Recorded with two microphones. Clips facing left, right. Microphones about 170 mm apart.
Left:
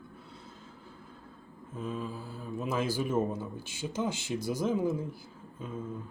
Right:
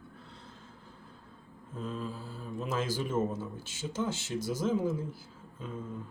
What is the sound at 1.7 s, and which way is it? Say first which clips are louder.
Speech: left 1 dB; 10° left (ahead or behind).